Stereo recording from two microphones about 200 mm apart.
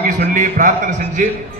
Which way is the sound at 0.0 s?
40° right (ahead or behind).